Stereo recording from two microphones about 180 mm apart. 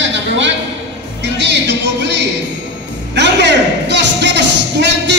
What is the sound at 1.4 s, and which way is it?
Music, 70° right (ahead or behind).